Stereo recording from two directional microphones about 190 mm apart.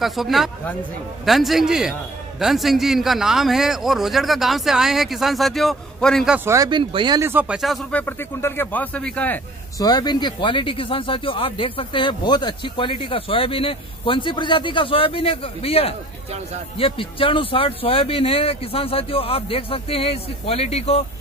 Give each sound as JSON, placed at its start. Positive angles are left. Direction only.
{"t": 0.0, "sound": "a man's voice", "side_deg": 0}
{"t": 9.8, "sound": "speech", "side_deg": 20}